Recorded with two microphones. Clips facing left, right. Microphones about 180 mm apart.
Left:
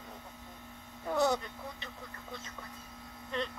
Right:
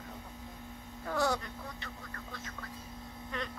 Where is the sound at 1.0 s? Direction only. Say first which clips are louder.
Left 2 dB; 20° left (ahead or behind).